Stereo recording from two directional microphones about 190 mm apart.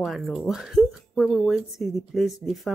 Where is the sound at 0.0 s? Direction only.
Centre (ahead or behind).